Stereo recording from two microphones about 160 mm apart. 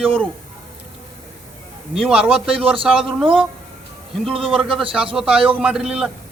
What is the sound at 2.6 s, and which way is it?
Speech, 35° right (ahead or behind).